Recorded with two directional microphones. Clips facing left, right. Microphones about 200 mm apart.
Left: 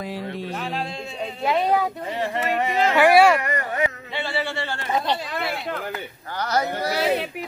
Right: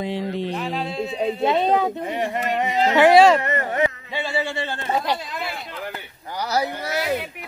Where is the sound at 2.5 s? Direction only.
20° right (ahead or behind).